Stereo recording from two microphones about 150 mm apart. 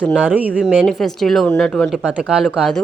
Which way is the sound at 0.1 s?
10° right (ahead or behind).